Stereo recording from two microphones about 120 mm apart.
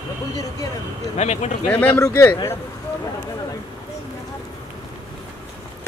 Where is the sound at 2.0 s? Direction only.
25° left (ahead or behind).